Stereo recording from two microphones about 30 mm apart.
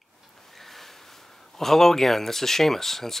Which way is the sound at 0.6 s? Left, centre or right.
Centre.